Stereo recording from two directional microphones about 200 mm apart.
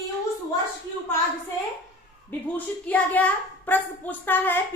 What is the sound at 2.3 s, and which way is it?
A child's voice, 10° left (ahead or behind).